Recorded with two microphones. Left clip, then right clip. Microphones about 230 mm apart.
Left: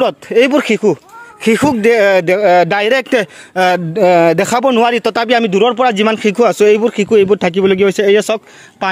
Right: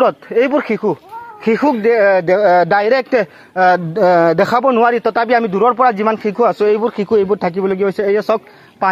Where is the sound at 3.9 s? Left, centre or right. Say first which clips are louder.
Left 2 dB; left.